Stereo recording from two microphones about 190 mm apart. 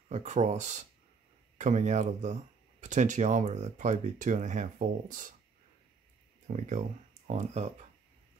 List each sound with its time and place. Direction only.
0.1 s speech: 35° right (ahead or behind)
6.4 s speech: 40° right (ahead or behind)